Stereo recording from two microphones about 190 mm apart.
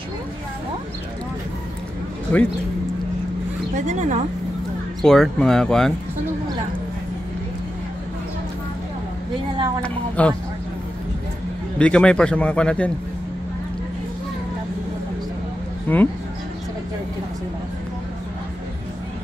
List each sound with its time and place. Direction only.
2.3 s speech: 10° left (ahead or behind)
3.7 s speech: 40° right (ahead or behind)
5.0 s speech: centre (ahead or behind)
9.8 s speech: 5° left (ahead or behind)
11.8 s speech: 5° left (ahead or behind)
15.9 s speech: 10° left (ahead or behind)